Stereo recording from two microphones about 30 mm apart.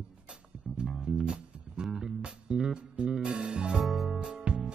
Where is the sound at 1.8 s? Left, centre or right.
Centre.